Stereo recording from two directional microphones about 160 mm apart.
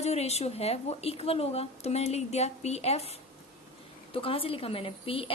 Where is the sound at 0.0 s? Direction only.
40° left (ahead or behind).